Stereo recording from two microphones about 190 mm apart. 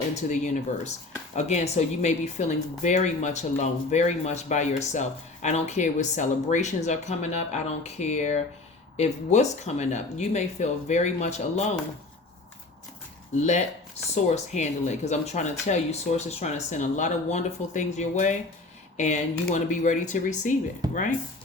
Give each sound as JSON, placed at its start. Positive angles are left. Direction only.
{"t": 0.1, "sound": "speech", "side_deg": 40}
{"t": 13.3, "sound": "speech", "side_deg": 40}